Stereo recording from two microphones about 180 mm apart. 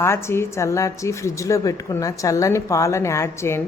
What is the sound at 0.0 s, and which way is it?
A woman's voice, 15° left (ahead or behind).